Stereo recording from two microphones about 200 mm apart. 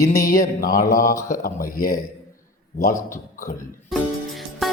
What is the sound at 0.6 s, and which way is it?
Speech, 45° left (ahead or behind).